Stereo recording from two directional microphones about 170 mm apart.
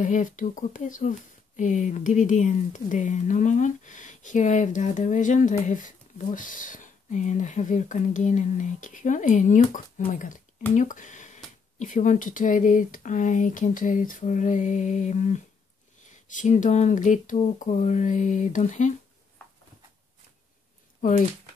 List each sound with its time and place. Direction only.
0.0 s speech: 45° left (ahead or behind)
21.0 s speech: 55° left (ahead or behind)